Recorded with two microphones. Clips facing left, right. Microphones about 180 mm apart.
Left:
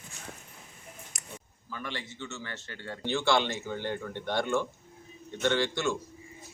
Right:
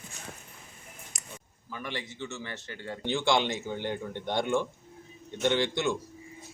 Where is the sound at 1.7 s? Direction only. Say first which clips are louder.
Right 1 dB; 15° right (ahead or behind).